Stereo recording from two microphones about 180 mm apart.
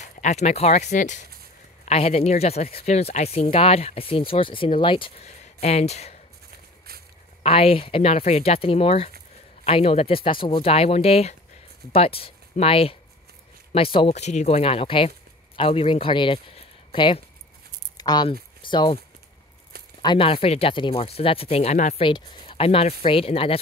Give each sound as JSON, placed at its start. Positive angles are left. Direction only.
{"t": 0.0, "sound": "speech", "side_deg": 40}
{"t": 7.4, "sound": "speech", "side_deg": 35}
{"t": 20.0, "sound": "speech", "side_deg": 25}